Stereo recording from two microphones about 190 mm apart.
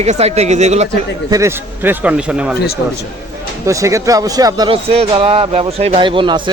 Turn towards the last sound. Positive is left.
turn(degrees=-25)  # may be behind; listen again after turning